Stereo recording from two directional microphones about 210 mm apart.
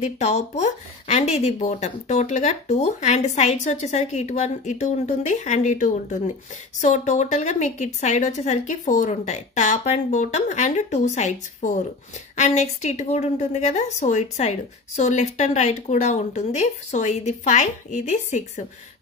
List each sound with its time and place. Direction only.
0.0 s speech: 35° left (ahead or behind)